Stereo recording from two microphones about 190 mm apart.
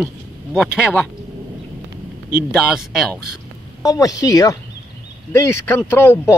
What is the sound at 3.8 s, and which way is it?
A woman's voice, 20° left (ahead or behind).